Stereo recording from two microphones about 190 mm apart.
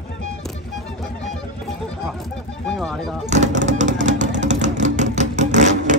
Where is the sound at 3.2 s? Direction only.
40° right (ahead or behind).